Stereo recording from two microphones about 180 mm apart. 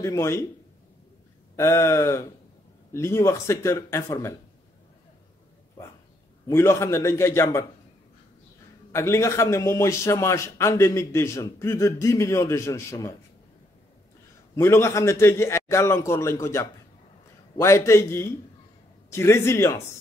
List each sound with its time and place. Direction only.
0.0 s a man's voice: 15° left (ahead or behind)
1.6 s a man's voice: 15° left (ahead or behind)
6.4 s a man's voice: 15° left (ahead or behind)
8.9 s a man's voice: 15° left (ahead or behind)
14.5 s a man's voice: 15° left (ahead or behind)